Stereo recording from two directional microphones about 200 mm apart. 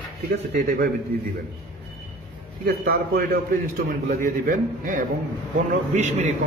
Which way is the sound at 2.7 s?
50° right (ahead or behind).